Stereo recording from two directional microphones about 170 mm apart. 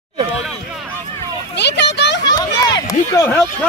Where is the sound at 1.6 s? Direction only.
90° left.